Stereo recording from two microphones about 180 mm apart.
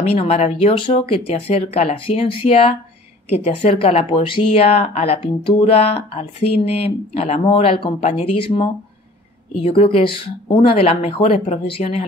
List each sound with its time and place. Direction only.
0.0 s speech: 35° left (ahead or behind)